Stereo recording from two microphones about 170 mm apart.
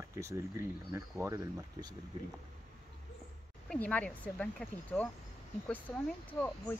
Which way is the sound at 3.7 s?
10° left (ahead or behind).